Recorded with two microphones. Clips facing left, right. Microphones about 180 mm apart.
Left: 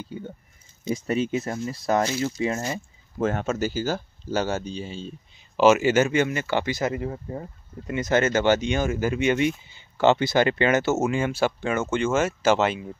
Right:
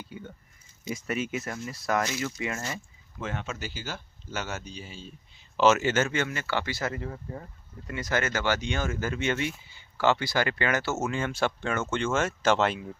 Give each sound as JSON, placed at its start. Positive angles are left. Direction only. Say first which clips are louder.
{"t": 0.1, "sound": "a sound", "louder": "left 6 dB", "side_deg": 30}
{"t": 0.8, "sound": "speech", "louder": "left 6 dB", "side_deg": 30}
{"t": 3.2, "sound": "speech", "louder": "left 10 dB", "side_deg": 45}
{"t": 5.6, "sound": "speech", "louder": "left 5 dB", "side_deg": 10}